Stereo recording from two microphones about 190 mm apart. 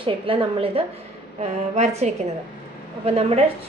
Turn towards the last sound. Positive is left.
turn(degrees=-30)  # may be behind; listen again after turning